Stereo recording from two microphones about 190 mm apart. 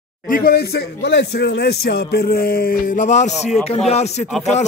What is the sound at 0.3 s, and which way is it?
Speech, 55° left (ahead or behind).